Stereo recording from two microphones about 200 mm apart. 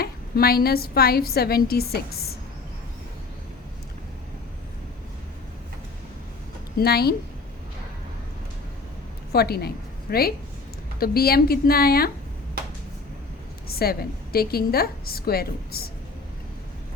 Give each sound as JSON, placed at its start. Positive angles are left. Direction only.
{"t": 0.0, "sound": "a woman's voice", "side_deg": 50}
{"t": 6.7, "sound": "a woman's voice", "side_deg": 50}
{"t": 9.3, "sound": "a woman's voice", "side_deg": 50}
{"t": 13.7, "sound": "a woman's voice", "side_deg": 50}